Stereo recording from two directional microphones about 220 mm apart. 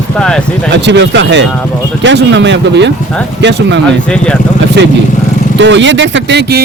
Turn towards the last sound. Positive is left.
turn(degrees=-50)  # may be behind; listen again after turning